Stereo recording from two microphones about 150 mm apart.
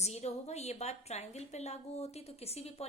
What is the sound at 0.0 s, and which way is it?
A woman's voice, 45° left (ahead or behind).